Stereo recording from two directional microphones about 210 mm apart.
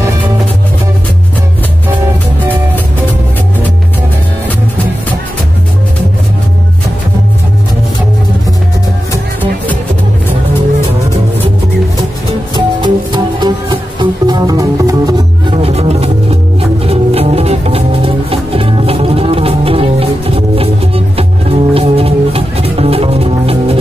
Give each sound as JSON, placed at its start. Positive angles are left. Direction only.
{"t": 12.5, "sound": "music", "side_deg": -20}